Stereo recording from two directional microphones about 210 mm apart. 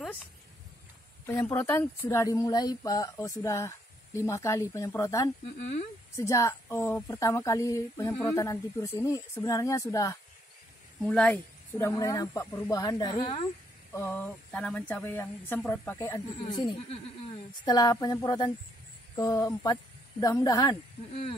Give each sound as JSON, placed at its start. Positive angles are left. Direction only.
{"t": 1.2, "sound": "speech", "side_deg": 10}
{"t": 11.0, "sound": "speech", "side_deg": 5}
{"t": 13.9, "sound": "speech", "side_deg": 10}